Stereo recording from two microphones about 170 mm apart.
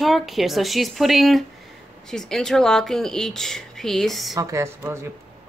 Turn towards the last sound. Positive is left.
turn(degrees=-15)  # may be behind; listen again after turning